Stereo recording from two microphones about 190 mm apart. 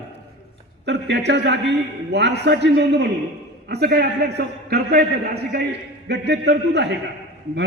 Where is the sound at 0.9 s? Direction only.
65° right (ahead or behind).